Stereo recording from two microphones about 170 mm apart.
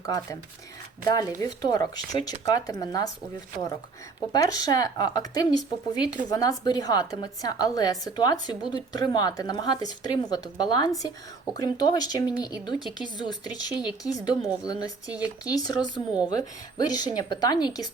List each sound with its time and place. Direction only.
0.0 s a woman's voice: 20° left (ahead or behind)
4.3 s a woman's voice: 20° left (ahead or behind)